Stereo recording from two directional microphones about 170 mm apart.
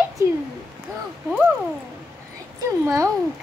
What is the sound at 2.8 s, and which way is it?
Speech, 15° right (ahead or behind).